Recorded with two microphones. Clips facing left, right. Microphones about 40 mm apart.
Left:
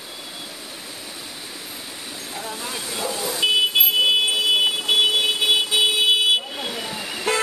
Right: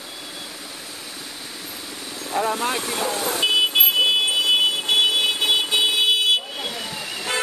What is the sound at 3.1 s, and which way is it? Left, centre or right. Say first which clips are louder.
Vehicle: right 2 dB; right.